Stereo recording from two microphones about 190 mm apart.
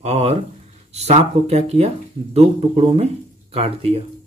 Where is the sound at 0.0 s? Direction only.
35° right (ahead or behind).